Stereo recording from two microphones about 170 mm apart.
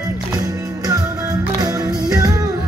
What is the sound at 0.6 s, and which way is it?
Music, 20° right (ahead or behind).